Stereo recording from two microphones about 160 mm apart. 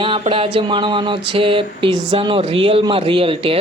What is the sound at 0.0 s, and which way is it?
Speech, 35° right (ahead or behind).